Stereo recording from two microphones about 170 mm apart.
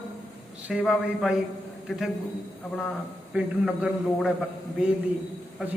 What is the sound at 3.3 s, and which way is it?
A man's voice, 5° right (ahead or behind).